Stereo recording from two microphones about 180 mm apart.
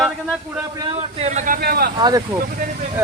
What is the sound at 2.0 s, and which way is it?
Speech, 20° right (ahead or behind).